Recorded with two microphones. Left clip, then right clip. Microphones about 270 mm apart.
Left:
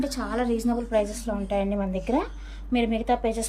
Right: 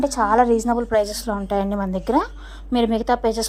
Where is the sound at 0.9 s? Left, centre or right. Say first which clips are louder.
Right 5 dB; centre.